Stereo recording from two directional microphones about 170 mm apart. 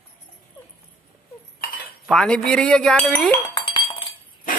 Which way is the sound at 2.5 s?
5° left (ahead or behind).